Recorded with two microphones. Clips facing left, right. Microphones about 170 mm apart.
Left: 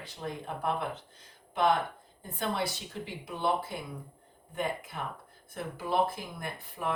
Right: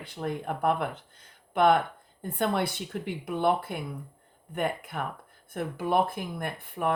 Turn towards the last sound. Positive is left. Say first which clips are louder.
# right 6 dB
turn(degrees=-55)  # may be behind; listen again after turning